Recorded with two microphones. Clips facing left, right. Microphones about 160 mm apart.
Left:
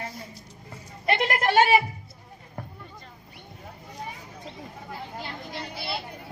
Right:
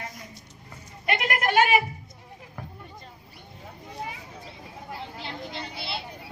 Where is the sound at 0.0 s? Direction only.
30° left (ahead or behind).